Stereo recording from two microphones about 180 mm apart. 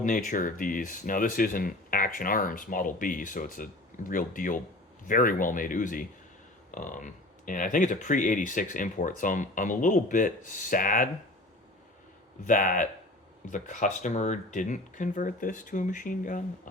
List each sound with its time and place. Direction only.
0.0 s speech: 50° left (ahead or behind)
12.5 s speech: 45° left (ahead or behind)